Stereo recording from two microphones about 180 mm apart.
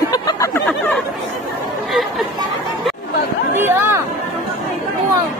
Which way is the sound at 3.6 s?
15° right (ahead or behind).